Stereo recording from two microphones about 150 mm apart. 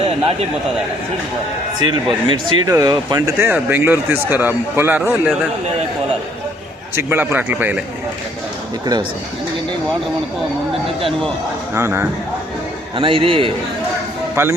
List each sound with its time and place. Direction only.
1.8 s speech: 30° right (ahead or behind); by 5.3 s 15° right (ahead or behind)
6.9 s speech: 15° right (ahead or behind)
11.7 s speech: 15° right (ahead or behind)
13.0 s a man's voice: 35° right (ahead or behind)
14.4 s speech: 20° right (ahead or behind)